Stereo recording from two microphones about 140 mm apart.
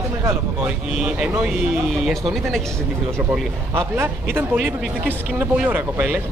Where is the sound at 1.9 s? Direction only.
Centre (ahead or behind).